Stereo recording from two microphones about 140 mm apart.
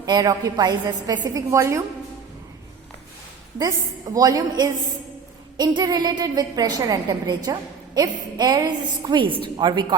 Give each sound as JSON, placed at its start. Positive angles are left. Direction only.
{"t": 0.0, "sound": "a woman's voice", "side_deg": -30}
{"t": 3.6, "sound": "a woman's voice", "side_deg": -25}